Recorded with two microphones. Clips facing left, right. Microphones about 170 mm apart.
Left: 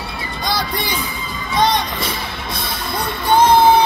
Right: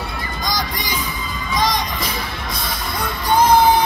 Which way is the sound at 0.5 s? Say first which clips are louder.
Left 4 dB; 30° left (ahead or behind).